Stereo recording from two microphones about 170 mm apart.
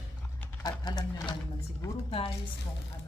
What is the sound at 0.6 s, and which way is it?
Speech, 25° left (ahead or behind).